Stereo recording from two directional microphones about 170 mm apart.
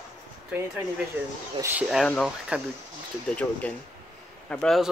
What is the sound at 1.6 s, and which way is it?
Speech, 10° right (ahead or behind).